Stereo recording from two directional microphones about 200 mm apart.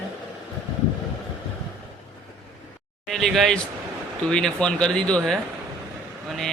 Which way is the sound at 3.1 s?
Centre (ahead or behind).